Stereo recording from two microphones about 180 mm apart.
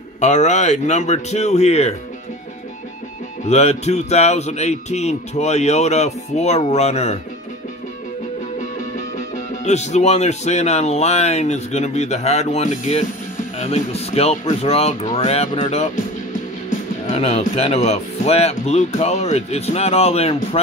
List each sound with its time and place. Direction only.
0.2 s speech: 40° left (ahead or behind)
3.4 s speech: 35° left (ahead or behind)
9.5 s speech: 40° left (ahead or behind)
17.1 s speech: 35° left (ahead or behind)